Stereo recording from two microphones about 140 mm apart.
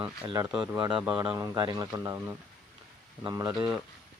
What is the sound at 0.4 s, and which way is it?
Speech, 25° right (ahead or behind).